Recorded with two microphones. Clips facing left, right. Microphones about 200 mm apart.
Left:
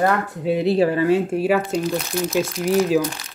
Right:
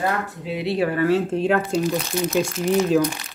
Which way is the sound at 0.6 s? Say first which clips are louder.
Left 4 dB; 35° left (ahead or behind).